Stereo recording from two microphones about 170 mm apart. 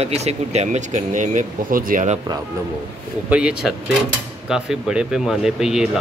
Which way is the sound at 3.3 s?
5° right (ahead or behind).